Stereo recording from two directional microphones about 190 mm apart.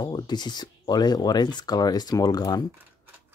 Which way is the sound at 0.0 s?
20° left (ahead or behind).